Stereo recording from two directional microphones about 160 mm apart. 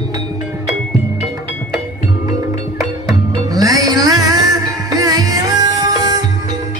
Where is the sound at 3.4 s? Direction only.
25° right (ahead or behind).